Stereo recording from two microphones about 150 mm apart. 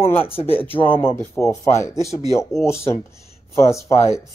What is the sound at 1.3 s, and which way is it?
Speech, 20° left (ahead or behind).